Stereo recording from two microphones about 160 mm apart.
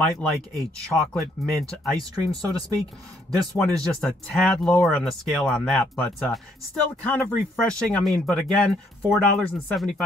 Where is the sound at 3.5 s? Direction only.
5° left (ahead or behind).